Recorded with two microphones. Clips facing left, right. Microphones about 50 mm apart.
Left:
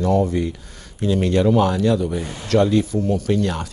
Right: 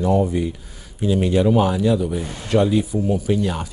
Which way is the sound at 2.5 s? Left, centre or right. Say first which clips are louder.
Left 1 dB; centre.